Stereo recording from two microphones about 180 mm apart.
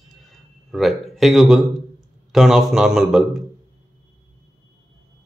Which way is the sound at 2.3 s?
Centre (ahead or behind).